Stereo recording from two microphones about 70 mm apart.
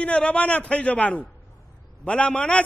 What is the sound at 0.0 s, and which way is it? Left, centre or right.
A man's voice, centre.